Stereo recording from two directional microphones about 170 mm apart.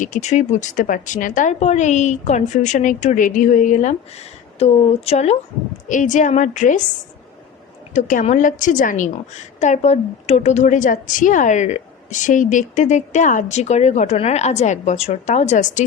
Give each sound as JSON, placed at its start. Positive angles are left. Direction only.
{"t": 0.0, "sound": "a woman's voice", "side_deg": 45}
{"t": 7.9, "sound": "a woman's voice", "side_deg": 50}